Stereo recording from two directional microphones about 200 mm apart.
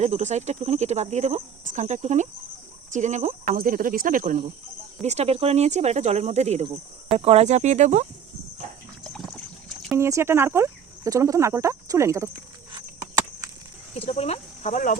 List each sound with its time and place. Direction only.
0.0 s speech: 35° right (ahead or behind)
9.0 s trickle: 5° left (ahead or behind)
10.0 s speech: 15° right (ahead or behind)
13.9 s speech: 30° left (ahead or behind)